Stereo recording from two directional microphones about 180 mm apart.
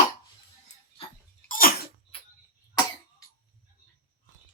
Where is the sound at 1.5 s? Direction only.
55° left (ahead or behind).